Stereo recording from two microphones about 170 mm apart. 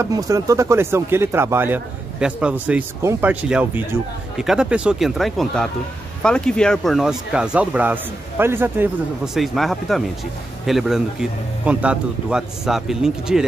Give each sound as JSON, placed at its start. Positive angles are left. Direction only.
{"t": 0.0, "sound": "speech", "side_deg": -20}
{"t": 9.3, "sound": "speech", "side_deg": 0}